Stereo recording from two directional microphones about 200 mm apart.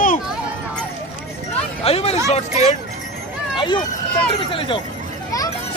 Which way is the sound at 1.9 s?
30° left (ahead or behind).